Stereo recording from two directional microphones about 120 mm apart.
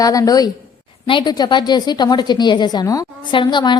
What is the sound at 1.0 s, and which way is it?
A woman's voice, 40° left (ahead or behind).